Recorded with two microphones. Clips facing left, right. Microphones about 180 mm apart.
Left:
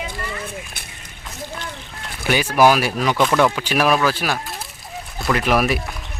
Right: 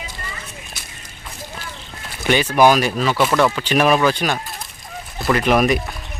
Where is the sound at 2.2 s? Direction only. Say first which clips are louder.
Right 1 dB; 10° left (ahead or behind).